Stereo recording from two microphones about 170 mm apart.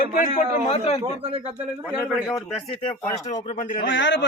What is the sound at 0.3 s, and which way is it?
Speech, 45° left (ahead or behind).